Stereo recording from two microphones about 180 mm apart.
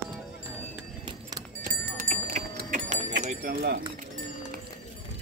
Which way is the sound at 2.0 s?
45° right (ahead or behind).